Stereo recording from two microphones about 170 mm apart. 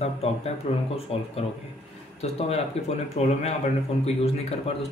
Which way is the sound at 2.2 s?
40° left (ahead or behind).